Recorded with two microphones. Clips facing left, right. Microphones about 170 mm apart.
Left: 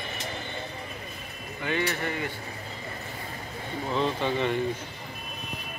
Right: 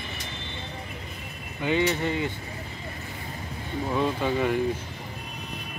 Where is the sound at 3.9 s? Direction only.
10° right (ahead or behind).